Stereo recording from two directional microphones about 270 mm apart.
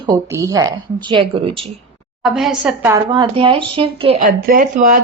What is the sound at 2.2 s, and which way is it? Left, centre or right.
Speech, centre.